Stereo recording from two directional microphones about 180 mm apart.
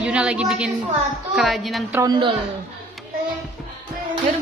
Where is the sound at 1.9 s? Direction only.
25° right (ahead or behind).